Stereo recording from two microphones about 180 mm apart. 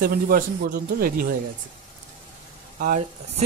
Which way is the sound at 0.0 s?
55° right (ahead or behind).